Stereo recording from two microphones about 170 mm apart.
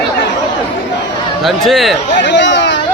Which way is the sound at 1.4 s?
Centre (ahead or behind).